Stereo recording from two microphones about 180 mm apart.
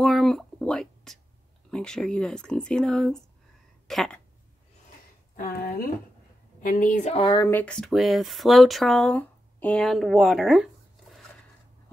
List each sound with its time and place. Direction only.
0.0 s a sound: 5° left (ahead or behind)
1.7 s speech: 5° left (ahead or behind)
5.3 s speech: 55° left (ahead or behind); by 7.4 s 30° left (ahead or behind)
7.4 s speech: 10° left (ahead or behind)